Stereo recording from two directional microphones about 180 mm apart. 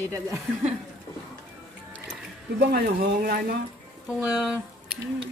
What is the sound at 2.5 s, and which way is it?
Speech, 55° right (ahead or behind).